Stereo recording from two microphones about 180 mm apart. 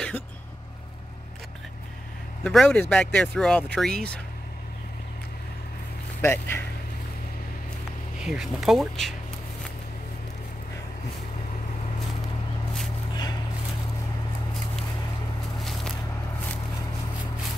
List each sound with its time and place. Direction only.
2.4 s speech: 5° left (ahead or behind)
6.2 s speech: 15° left (ahead or behind)
8.2 s speech: centre (ahead or behind)
13.1 s vehicle: 25° left (ahead or behind)